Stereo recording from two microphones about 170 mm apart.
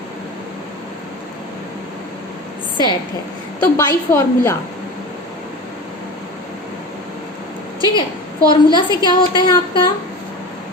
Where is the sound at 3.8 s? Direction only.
15° left (ahead or behind).